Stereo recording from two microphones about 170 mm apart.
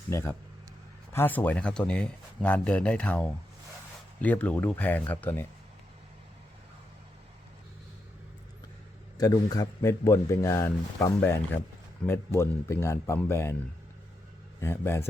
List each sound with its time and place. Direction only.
0.1 s a man's voice: 15° left (ahead or behind)
9.1 s a man's voice: 20° left (ahead or behind)
14.6 s a man's voice: 15° left (ahead or behind)